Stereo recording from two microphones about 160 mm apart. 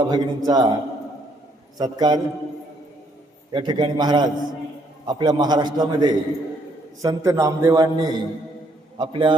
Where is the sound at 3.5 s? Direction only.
25° right (ahead or behind).